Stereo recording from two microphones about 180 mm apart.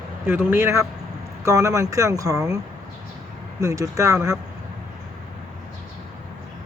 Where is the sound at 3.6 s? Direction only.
20° right (ahead or behind).